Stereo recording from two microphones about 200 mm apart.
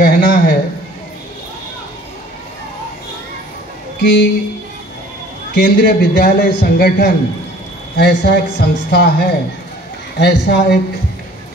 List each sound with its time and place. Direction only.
0.0 s a man's voice: 50° left (ahead or behind)
4.0 s speech: 55° left (ahead or behind)
5.5 s a man's voice: 55° left (ahead or behind)